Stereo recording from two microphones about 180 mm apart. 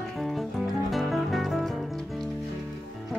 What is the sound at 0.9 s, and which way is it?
Music, centre (ahead or behind).